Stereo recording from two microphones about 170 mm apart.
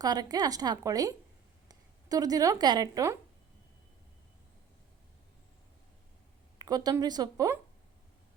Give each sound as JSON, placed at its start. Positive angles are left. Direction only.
{"t": 0.0, "sound": "a woman's voice", "side_deg": -20}
{"t": 6.6, "sound": "a woman's voice", "side_deg": -20}